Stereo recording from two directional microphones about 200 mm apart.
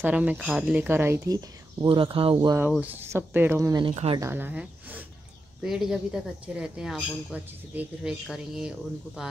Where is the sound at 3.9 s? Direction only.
30° right (ahead or behind).